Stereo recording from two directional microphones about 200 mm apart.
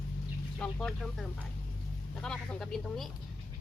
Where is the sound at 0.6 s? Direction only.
Centre (ahead or behind).